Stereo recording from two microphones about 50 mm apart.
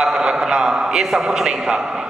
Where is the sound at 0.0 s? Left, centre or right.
Centre.